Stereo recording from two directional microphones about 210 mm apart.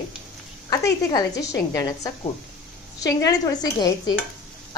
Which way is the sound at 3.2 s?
20° left (ahead or behind).